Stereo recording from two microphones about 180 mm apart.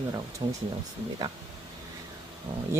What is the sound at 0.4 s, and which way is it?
Speech, 25° right (ahead or behind).